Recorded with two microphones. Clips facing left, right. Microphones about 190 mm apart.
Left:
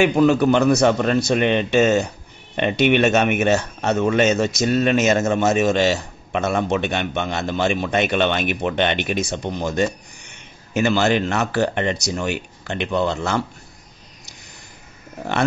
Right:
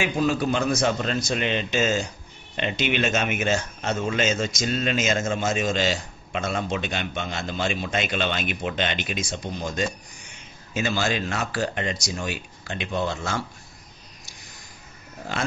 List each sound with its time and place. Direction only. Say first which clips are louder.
0.0 s speech: left 8 dB; 65° left (ahead or behind)